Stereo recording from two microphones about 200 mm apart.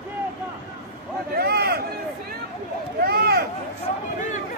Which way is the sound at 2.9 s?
50° right (ahead or behind).